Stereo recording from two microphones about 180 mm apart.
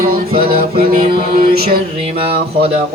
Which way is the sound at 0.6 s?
55° right (ahead or behind).